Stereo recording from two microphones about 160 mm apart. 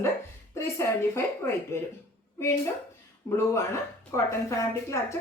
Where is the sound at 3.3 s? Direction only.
15° left (ahead or behind).